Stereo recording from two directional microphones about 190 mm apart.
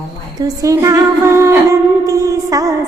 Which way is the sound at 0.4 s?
15° right (ahead or behind).